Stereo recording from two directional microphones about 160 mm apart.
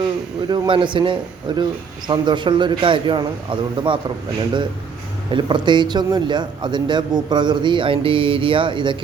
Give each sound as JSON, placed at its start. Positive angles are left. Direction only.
{"t": 0.4, "sound": "a man's voice", "side_deg": -25}
{"t": 5.3, "sound": "a man's voice", "side_deg": -30}